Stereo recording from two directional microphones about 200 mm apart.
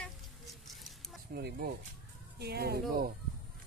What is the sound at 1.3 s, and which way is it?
Speech, 50° right (ahead or behind).